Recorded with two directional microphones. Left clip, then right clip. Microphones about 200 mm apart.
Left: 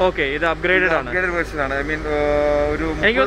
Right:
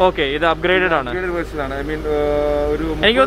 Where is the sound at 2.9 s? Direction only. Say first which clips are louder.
Right 3 dB; 15° right (ahead or behind).